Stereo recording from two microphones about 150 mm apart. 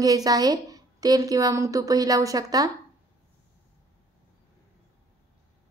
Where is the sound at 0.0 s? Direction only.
25° right (ahead or behind).